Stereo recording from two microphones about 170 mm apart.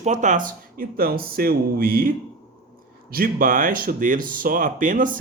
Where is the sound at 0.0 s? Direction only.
45° right (ahead or behind).